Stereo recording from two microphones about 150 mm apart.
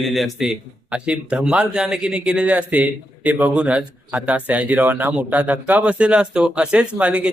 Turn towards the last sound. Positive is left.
turn(degrees=-10)  # may be behind; listen again after turning